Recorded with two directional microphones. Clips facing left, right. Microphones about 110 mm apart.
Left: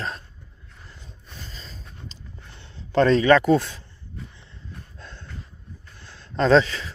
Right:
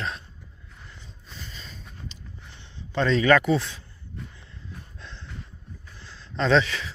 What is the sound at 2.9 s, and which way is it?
Speech, 50° left (ahead or behind).